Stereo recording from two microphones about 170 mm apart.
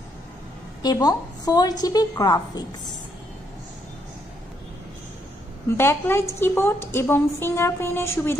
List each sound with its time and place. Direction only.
0.8 s a woman's voice: 20° left (ahead or behind)
5.8 s a woman's voice: 15° left (ahead or behind)